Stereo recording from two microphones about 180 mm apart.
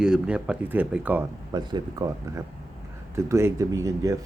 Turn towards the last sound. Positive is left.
turn(degrees=-15)  # may be behind; listen again after turning